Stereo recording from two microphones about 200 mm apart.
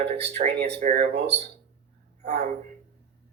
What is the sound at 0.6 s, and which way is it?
Speech, 50° right (ahead or behind).